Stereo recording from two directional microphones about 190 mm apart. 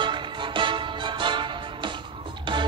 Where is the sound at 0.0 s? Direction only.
25° right (ahead or behind).